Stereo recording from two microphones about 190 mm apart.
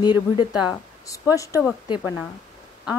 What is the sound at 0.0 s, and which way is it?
Speech, 20° left (ahead or behind).